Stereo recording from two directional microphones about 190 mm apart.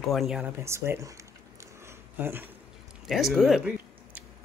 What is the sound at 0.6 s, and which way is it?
Speech, 15° right (ahead or behind).